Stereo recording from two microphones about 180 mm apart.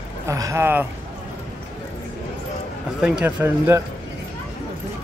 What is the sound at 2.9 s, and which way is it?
Speech, 5° right (ahead or behind).